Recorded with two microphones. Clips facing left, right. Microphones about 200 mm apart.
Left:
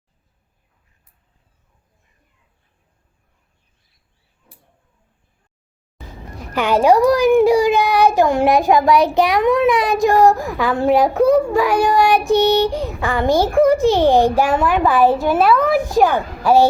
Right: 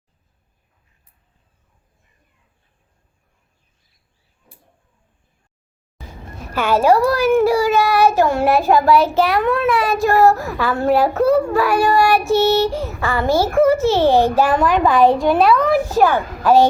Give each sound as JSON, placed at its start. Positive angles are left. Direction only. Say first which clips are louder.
{"t": 6.5, "sound": "a child's voice", "louder": "left 1 dB", "side_deg": 15}
{"t": 11.2, "sound": "a child's voice", "louder": "left 3 dB", "side_deg": 0}
{"t": 11.5, "sound": "a child's voice", "louder": "even", "side_deg": 15}